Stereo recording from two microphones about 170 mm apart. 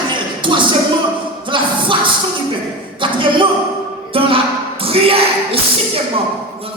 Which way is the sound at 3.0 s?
30° right (ahead or behind).